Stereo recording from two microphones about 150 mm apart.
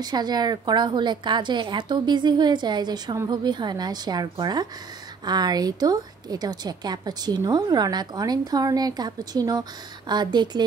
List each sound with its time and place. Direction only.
0.0 s a woman's voice: 25° right (ahead or behind)